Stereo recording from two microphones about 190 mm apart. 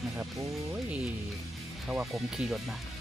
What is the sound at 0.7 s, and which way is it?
Speech, 5° right (ahead or behind).